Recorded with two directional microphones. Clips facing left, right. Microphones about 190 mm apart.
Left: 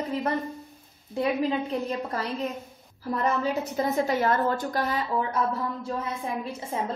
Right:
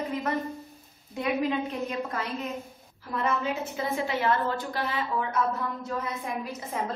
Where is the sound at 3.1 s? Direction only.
40° left (ahead or behind).